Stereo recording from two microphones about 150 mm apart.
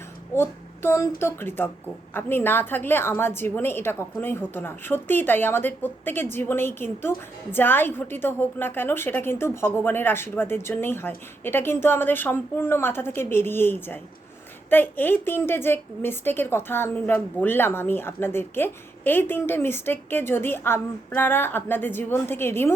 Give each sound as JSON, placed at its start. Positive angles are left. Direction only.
{"t": 0.3, "sound": "child singing", "side_deg": 15}
{"t": 1.2, "sound": "a woman's voice", "side_deg": 15}